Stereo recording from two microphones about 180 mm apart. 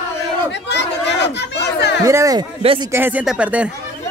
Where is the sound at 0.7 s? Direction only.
75° left (ahead or behind).